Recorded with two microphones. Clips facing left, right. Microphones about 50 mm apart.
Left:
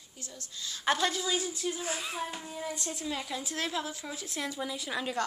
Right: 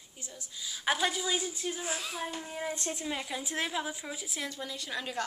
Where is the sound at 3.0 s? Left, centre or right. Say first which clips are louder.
Left 3 dB; centre.